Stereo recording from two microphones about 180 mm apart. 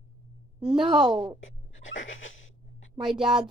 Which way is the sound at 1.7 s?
90° left.